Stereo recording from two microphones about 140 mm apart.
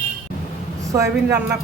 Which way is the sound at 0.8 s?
20° right (ahead or behind).